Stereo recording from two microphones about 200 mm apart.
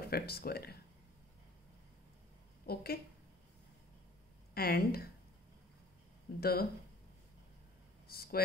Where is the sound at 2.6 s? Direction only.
50° left (ahead or behind).